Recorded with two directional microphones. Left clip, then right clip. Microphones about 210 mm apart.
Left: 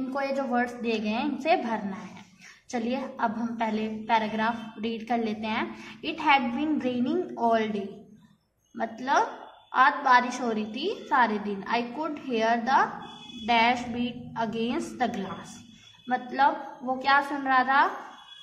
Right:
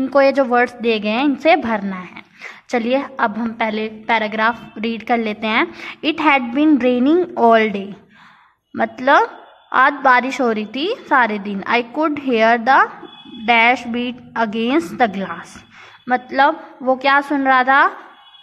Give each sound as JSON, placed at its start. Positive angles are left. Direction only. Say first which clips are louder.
{"t": 0.1, "sound": "a woman's voice", "louder": "right 15 dB", "side_deg": -40}